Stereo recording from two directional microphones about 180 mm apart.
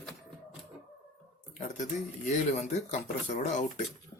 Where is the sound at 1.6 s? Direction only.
45° left (ahead or behind).